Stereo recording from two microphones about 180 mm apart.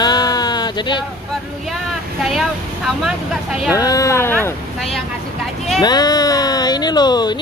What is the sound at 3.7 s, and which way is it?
Speech, 20° left (ahead or behind).